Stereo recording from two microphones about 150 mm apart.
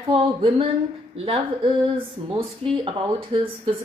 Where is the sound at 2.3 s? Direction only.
35° right (ahead or behind).